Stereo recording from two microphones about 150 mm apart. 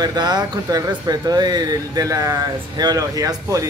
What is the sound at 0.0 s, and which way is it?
Speech, 25° right (ahead or behind).